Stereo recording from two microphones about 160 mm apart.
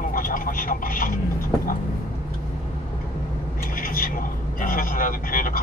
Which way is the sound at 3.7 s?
60° left (ahead or behind).